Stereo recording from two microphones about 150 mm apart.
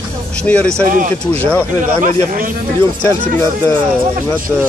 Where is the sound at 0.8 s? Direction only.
60° right (ahead or behind).